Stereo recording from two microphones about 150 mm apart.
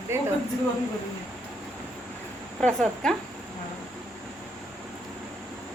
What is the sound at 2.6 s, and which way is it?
Speech, 5° left (ahead or behind).